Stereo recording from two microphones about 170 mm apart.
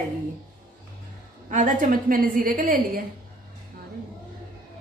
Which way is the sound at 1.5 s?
50° right (ahead or behind).